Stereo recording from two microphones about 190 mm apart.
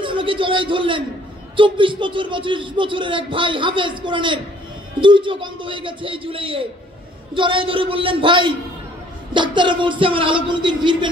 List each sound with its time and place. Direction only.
0.0 s a man's voice: 25° right (ahead or behind)